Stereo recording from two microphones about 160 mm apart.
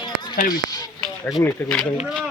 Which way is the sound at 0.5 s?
25° left (ahead or behind).